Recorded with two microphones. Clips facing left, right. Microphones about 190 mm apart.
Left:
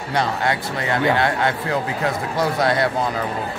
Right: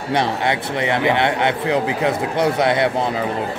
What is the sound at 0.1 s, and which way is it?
Speech, 25° right (ahead or behind).